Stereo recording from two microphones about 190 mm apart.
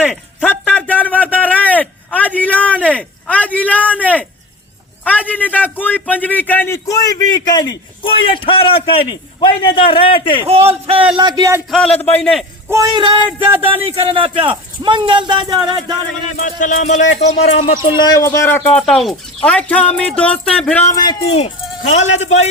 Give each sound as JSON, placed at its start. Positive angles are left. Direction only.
{"t": 0.0, "sound": "a sound", "side_deg": 10}
{"t": 5.0, "sound": "a man's voice", "side_deg": 10}
{"t": 10.4, "sound": "a man's voice", "side_deg": -30}
{"t": 11.2, "sound": "speech", "side_deg": -20}
{"t": 12.0, "sound": "a man's voice", "side_deg": 5}
{"t": 12.7, "sound": "speech", "side_deg": -20}
{"t": 16.4, "sound": "speech", "side_deg": 40}
{"t": 18.0, "sound": "speech", "side_deg": 15}
{"t": 21.2, "sound": "speech", "side_deg": 35}